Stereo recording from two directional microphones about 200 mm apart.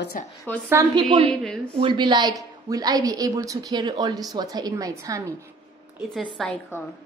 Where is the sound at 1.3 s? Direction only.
5° left (ahead or behind).